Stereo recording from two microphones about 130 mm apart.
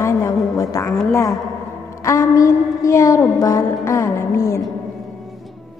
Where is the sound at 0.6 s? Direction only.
25° left (ahead or behind).